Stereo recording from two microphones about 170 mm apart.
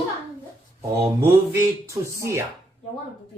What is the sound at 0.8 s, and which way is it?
Speech, 15° right (ahead or behind).